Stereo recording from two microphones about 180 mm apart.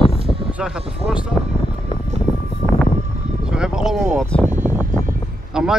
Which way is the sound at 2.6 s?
30° left (ahead or behind).